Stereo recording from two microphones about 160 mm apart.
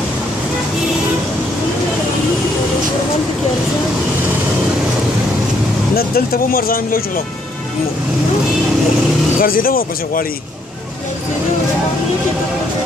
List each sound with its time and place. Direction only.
5.9 s speech: 70° left (ahead or behind)
9.4 s speech: 65° left (ahead or behind)